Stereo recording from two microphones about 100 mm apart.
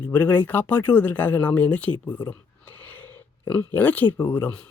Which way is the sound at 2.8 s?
20° left (ahead or behind).